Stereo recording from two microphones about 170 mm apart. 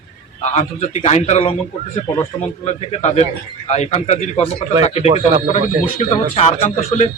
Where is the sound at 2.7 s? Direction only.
40° left (ahead or behind).